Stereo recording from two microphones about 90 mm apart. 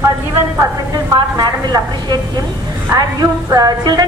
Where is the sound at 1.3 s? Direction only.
50° right (ahead or behind).